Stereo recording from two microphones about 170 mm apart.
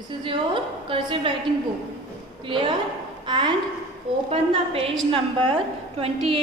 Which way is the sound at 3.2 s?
30° right (ahead or behind).